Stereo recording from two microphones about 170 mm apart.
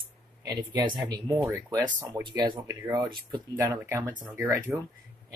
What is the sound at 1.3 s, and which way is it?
Speech, 15° right (ahead or behind).